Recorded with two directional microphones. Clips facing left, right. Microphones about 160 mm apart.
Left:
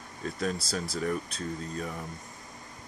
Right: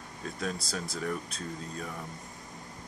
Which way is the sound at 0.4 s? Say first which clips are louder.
Left 3 dB; centre (ahead or behind).